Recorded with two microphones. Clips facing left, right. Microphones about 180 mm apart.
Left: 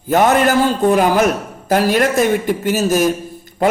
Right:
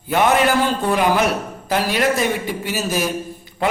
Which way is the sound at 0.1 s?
45° left (ahead or behind).